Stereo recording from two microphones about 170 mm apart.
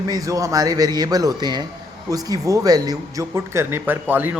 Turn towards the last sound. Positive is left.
turn(degrees=-10)  # may be behind; listen again after turning